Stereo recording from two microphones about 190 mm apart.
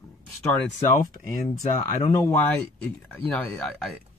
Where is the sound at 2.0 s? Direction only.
15° left (ahead or behind).